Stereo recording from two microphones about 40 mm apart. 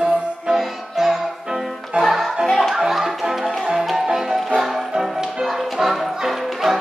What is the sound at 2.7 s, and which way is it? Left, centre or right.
Music, centre.